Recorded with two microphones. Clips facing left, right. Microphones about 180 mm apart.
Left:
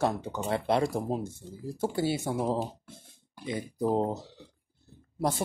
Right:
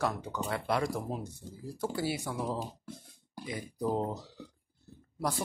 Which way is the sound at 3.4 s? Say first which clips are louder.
Left 4 dB; 25° left (ahead or behind).